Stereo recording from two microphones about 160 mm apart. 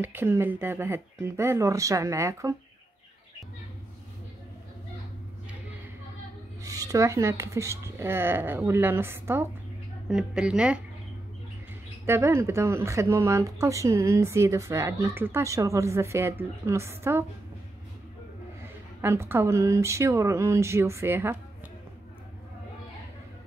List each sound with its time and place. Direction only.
0.0 s speech: 15° right (ahead or behind)
6.6 s speech: 20° right (ahead or behind); by 10.8 s 5° right (ahead or behind)
12.1 s speech: 15° right (ahead or behind)
18.9 s speech: 15° right (ahead or behind)